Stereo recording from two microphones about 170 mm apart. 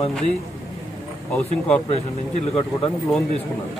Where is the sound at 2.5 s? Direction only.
35° left (ahead or behind).